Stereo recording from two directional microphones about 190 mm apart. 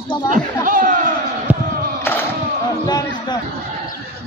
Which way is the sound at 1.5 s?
5° right (ahead or behind).